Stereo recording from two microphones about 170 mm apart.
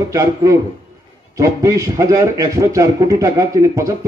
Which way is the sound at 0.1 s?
20° right (ahead or behind).